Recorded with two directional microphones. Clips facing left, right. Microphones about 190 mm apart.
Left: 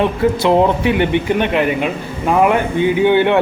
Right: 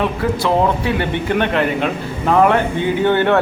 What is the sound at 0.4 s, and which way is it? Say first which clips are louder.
A man's voice: left 3 dB; 20° left (ahead or behind).